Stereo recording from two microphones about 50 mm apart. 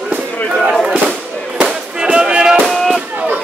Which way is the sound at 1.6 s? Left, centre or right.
Centre.